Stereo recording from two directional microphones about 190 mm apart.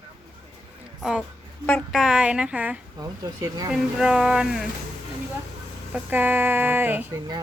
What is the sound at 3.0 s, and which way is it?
Speech, 20° right (ahead or behind).